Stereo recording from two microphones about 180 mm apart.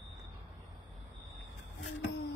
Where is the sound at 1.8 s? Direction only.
75° left (ahead or behind).